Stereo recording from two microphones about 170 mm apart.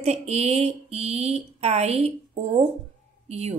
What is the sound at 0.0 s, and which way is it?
Speech, 40° right (ahead or behind).